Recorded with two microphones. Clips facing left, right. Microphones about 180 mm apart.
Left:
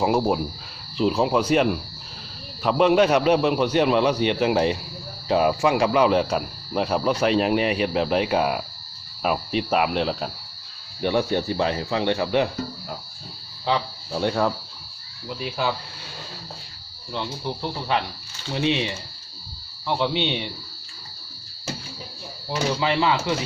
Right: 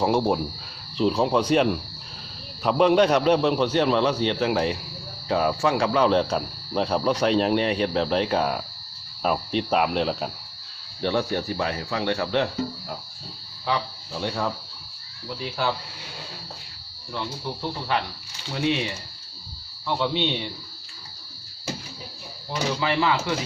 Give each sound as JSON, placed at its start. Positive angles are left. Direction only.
{"t": 0.0, "sound": "a man's voice", "side_deg": 5}
{"t": 11.0, "sound": "speech", "side_deg": 20}
{"t": 13.7, "sound": "speech", "side_deg": 25}
{"t": 14.1, "sound": "speech", "side_deg": 55}
{"t": 15.3, "sound": "a man's voice", "side_deg": 15}
{"t": 17.2, "sound": "a man's voice", "side_deg": 20}
{"t": 22.8, "sound": "speech", "side_deg": 20}